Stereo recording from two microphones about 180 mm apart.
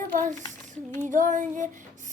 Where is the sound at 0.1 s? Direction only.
45° right (ahead or behind).